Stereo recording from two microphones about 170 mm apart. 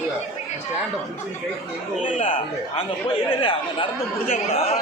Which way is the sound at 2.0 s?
35° left (ahead or behind).